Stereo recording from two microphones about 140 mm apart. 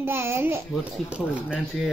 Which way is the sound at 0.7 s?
5° right (ahead or behind).